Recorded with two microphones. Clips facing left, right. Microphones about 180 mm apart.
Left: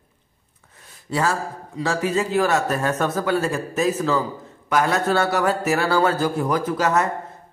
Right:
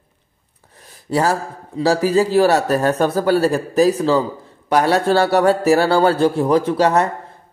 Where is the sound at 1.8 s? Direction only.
35° right (ahead or behind).